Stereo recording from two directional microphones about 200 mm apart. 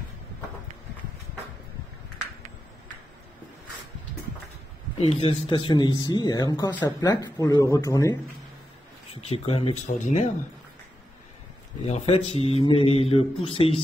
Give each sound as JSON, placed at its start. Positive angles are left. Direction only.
{"t": 4.9, "sound": "speech", "side_deg": 30}
{"t": 9.2, "sound": "speech", "side_deg": 30}
{"t": 11.8, "sound": "speech", "side_deg": 30}